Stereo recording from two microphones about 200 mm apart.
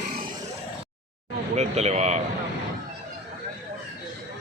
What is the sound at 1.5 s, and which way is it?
Speech, 35° right (ahead or behind).